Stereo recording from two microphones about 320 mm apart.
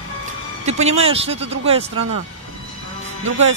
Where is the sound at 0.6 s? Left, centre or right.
Centre.